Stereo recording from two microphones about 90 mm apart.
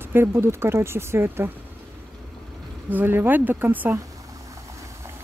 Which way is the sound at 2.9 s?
20° right (ahead or behind).